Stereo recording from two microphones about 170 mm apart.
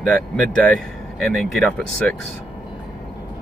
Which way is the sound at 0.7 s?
Centre (ahead or behind).